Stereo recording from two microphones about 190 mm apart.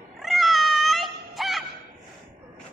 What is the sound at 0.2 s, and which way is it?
Cat, centre (ahead or behind).